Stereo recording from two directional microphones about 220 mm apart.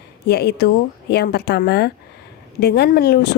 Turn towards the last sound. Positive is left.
turn(degrees=45)  # may be behind; listen again after turning